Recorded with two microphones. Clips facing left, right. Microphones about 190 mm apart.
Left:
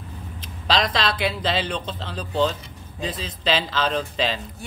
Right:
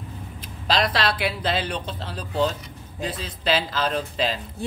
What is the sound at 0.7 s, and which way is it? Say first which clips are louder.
Speech: even; 5° right (ahead or behind).